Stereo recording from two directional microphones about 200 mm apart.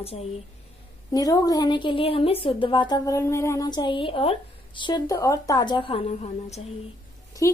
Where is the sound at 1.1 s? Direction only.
20° left (ahead or behind); by 6.6 s 35° left (ahead or behind).